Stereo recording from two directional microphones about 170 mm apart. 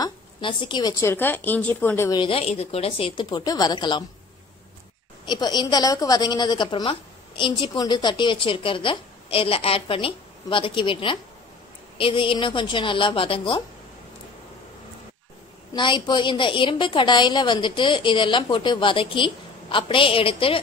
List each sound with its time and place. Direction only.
0.0 s a woman's voice: 30° left (ahead or behind); by 2.1 s 15° left (ahead or behind)
2.1 s a woman's voice: 30° left (ahead or behind)
5.2 s a woman's voice: 25° left (ahead or behind)
15.7 s a woman's voice: 25° left (ahead or behind)